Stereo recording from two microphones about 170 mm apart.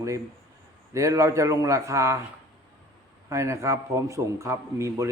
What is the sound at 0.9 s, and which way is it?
A man's voice, 20° right (ahead or behind).